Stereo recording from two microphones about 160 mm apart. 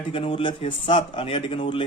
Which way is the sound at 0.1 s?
35° left (ahead or behind).